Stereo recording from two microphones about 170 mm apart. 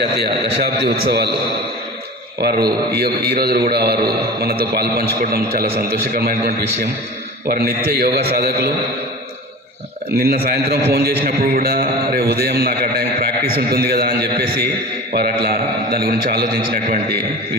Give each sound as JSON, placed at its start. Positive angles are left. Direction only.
{"t": 0.9, "sound": "a man's voice", "side_deg": -70}
{"t": 2.4, "sound": "a man's voice", "side_deg": -70}
{"t": 10.2, "sound": "a man's voice", "side_deg": -65}